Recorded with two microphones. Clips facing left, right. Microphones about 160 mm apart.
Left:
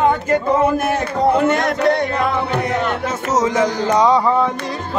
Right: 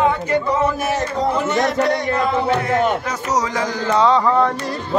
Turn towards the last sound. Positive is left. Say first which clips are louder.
# left 1 dB
turn(degrees=10)  # may be behind; listen again after turning